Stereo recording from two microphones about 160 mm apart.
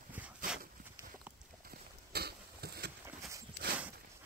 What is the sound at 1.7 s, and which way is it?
Horse, 80° right.